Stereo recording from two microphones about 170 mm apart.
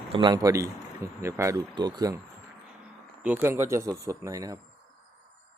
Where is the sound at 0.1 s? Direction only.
25° right (ahead or behind).